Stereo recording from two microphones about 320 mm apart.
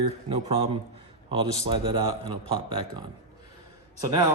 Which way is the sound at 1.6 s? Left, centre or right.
Centre.